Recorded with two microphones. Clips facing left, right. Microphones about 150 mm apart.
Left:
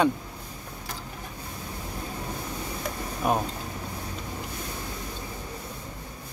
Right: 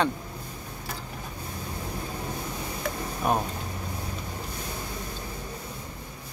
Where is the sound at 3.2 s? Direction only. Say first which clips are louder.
Even; centre (ahead or behind).